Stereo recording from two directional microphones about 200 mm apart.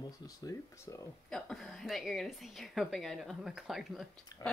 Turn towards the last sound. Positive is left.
turn(degrees=0)  # may be behind; listen again after turning